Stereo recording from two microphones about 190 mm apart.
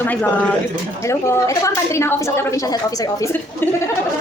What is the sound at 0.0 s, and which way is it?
A woman's voice, 10° left (ahead or behind).